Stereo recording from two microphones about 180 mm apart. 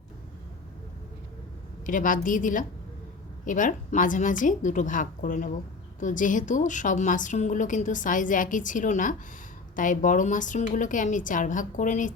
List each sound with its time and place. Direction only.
1.9 s a woman's voice: 45° left (ahead or behind)